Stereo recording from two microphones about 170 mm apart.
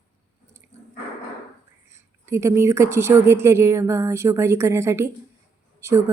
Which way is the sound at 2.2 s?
15° right (ahead or behind).